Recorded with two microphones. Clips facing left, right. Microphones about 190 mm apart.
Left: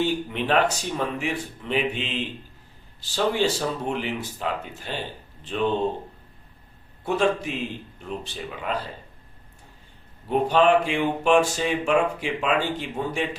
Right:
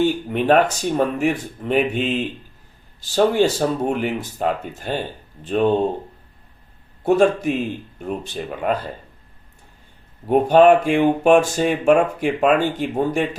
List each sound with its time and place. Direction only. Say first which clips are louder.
0.0 s speech: right 6 dB; 50° right (ahead or behind)
7.0 s speech: right 7 dB; 45° right (ahead or behind)
10.2 s speech: right 7 dB; 50° right (ahead or behind)